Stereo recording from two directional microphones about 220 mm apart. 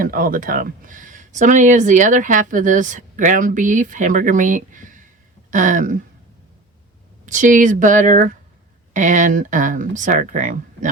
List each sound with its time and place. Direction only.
0.0 s speech: 40° right (ahead or behind)
7.3 s speech: 35° right (ahead or behind)